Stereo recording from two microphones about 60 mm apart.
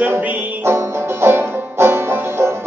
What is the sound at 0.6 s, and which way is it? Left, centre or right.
Music, right.